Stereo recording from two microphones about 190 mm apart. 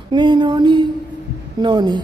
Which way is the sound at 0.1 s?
25° right (ahead or behind).